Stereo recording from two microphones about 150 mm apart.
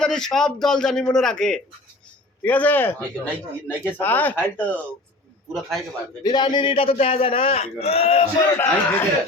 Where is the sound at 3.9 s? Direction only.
10° left (ahead or behind).